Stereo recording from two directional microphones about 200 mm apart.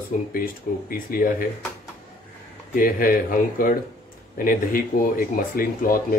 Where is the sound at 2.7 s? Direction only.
45° left (ahead or behind).